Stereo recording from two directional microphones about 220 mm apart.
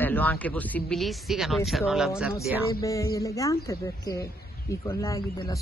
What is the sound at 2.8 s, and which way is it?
A man's voice, 15° left (ahead or behind).